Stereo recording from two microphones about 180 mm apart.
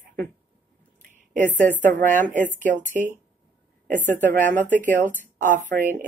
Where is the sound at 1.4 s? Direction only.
45° right (ahead or behind).